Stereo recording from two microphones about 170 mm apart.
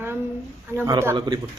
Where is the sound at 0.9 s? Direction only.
15° right (ahead or behind).